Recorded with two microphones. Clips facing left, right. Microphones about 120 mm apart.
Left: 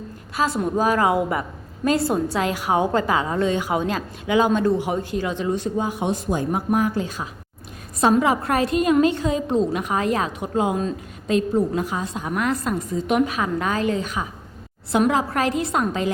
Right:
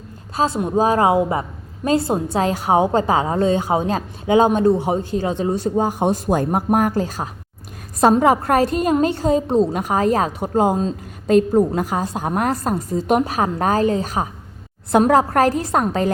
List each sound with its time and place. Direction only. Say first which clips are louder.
0.3 s a woman's voice: right 3 dB; 30° right (ahead or behind)